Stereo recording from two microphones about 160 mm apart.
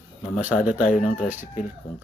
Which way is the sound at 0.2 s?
50° left (ahead or behind).